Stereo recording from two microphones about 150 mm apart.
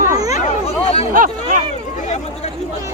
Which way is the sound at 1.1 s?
60° right (ahead or behind).